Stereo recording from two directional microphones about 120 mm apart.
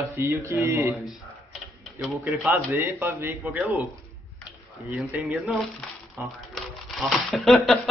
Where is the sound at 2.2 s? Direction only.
15° right (ahead or behind).